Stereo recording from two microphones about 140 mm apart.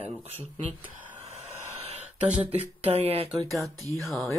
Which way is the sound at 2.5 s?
45° right (ahead or behind).